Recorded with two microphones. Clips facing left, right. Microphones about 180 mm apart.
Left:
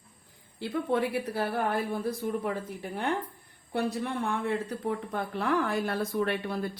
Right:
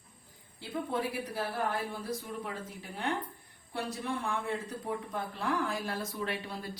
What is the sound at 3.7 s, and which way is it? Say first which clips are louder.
Speech: left 5 dB; 60° left (ahead or behind).